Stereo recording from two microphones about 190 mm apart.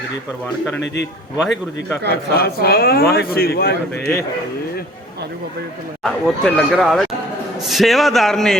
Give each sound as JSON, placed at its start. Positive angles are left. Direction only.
{"t": 2.0, "sound": "a man's voice", "side_deg": 55}
{"t": 6.0, "sound": "speech", "side_deg": 0}